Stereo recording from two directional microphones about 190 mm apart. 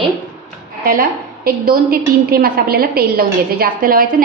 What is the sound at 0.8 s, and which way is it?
A woman's voice, 50° right (ahead or behind).